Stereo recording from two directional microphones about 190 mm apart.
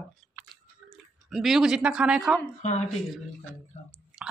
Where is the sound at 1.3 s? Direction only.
Centre (ahead or behind).